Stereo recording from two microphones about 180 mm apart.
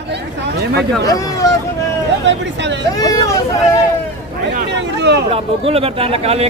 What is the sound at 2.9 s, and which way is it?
Speech, 20° left (ahead or behind).